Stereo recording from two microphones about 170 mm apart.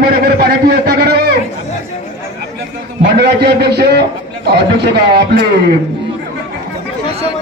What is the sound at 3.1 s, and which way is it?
A man's voice, 75° right (ahead or behind).